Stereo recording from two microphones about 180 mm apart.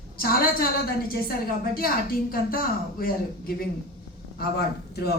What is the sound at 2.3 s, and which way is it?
Speech, 55° left (ahead or behind).